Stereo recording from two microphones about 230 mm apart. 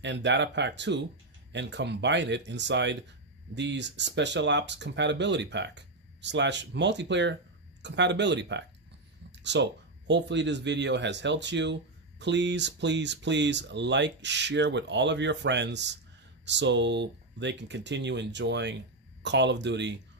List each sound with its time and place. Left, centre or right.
0.0 s speech: right